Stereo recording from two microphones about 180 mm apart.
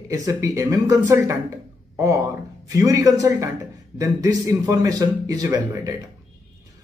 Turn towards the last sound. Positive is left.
turn(degrees=-20)  # may be behind; listen again after turning